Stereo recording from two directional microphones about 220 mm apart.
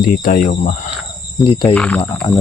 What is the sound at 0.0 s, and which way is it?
Speech, 40° left (ahead or behind).